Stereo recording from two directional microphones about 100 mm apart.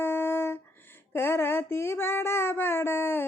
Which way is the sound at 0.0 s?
25° left (ahead or behind).